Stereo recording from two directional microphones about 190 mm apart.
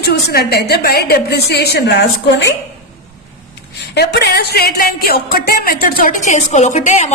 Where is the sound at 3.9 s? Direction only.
60° left (ahead or behind); by 7.1 s 40° left (ahead or behind).